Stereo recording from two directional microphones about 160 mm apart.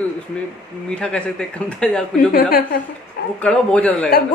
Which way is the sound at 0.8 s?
5° left (ahead or behind).